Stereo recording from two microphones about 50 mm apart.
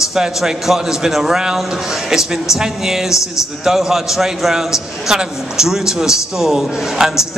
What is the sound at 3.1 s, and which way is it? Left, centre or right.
Speech, left.